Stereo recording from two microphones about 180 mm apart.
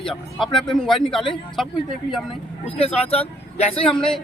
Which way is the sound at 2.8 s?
35° left (ahead or behind).